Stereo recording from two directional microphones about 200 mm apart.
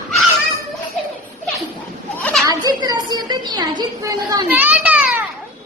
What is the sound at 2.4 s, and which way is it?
A woman's voice, 20° right (ahead or behind).